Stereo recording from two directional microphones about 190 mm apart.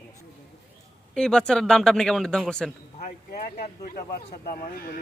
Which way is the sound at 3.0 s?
45° left (ahead or behind).